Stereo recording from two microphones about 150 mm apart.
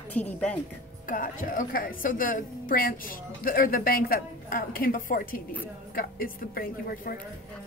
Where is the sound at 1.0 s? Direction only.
65° left (ahead or behind).